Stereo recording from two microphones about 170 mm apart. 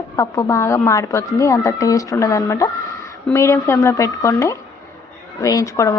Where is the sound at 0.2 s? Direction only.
20° left (ahead or behind).